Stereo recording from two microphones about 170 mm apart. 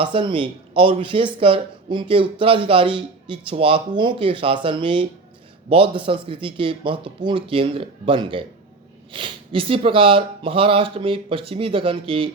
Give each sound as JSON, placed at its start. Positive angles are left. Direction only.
{"t": 0.0, "sound": "speech", "side_deg": -30}